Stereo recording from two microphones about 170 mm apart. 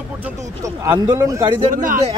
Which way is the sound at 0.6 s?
20° right (ahead or behind).